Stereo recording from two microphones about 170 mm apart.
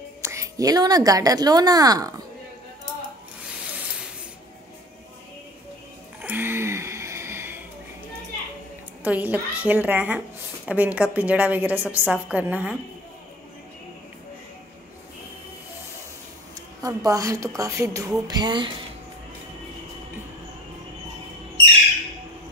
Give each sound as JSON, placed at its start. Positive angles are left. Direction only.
{"t": 0.2, "sound": "a woman's voice", "side_deg": -15}
{"t": 3.4, "sound": "rub", "side_deg": -5}
{"t": 6.2, "sound": "a sound", "side_deg": -10}
{"t": 9.0, "sound": "a woman's voice", "side_deg": -10}
{"t": 16.8, "sound": "a woman's voice", "side_deg": -20}